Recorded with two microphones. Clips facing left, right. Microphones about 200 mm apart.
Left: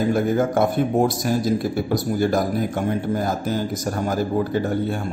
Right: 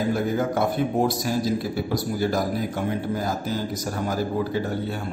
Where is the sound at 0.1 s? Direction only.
50° left (ahead or behind).